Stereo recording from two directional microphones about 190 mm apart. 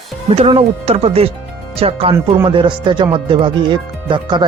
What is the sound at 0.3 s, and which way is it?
Speech, 30° right (ahead or behind).